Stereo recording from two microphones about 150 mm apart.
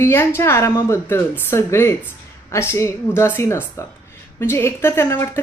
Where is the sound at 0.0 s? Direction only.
15° left (ahead or behind).